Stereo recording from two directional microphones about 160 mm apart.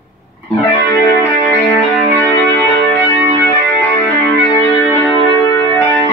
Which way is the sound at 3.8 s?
10° left (ahead or behind).